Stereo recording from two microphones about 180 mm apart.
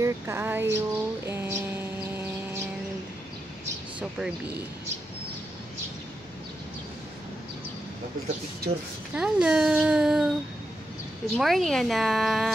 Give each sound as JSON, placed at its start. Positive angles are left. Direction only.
{"t": 0.0, "sound": "a sound", "side_deg": -15}
{"t": 9.1, "sound": "speech", "side_deg": -5}
{"t": 11.3, "sound": "speech", "side_deg": 0}